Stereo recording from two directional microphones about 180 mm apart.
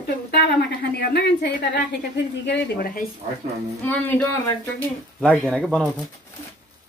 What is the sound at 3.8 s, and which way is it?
Speech, 10° left (ahead or behind).